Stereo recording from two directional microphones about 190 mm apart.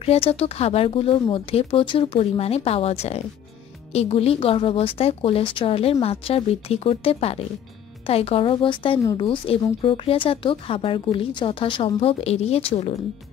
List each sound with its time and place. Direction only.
0.0 s a woman's voice: 30° left (ahead or behind)